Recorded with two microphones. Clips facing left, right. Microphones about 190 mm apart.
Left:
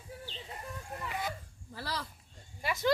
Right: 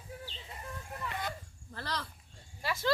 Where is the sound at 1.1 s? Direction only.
5° left (ahead or behind).